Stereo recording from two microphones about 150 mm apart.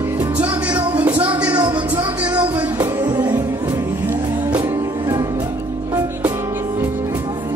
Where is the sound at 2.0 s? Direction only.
10° right (ahead or behind).